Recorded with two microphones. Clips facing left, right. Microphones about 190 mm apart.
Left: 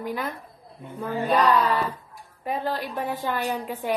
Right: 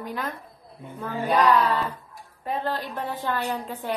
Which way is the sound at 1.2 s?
15° right (ahead or behind).